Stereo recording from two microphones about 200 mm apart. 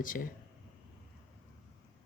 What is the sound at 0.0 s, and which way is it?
Speech, 45° left (ahead or behind).